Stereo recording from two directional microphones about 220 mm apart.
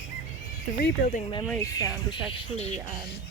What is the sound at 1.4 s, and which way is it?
Speech, 10° left (ahead or behind).